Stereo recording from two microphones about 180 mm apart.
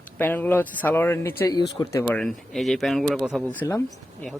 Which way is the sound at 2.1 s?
Centre (ahead or behind).